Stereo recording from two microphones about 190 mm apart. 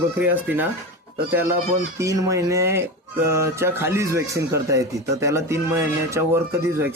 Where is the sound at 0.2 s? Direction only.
10° right (ahead or behind).